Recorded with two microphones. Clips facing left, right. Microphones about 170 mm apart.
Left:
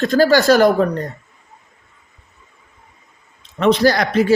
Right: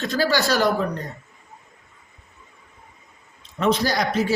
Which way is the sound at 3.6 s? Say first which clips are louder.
Left 7 dB; 75° left (ahead or behind).